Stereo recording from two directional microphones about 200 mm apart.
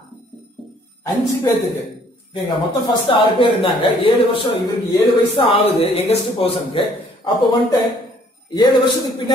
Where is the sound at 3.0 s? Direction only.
25° left (ahead or behind).